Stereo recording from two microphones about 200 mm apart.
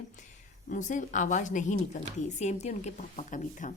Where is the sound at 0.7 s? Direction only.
40° left (ahead or behind).